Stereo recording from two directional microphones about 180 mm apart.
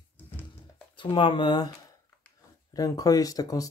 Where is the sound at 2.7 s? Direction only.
20° left (ahead or behind).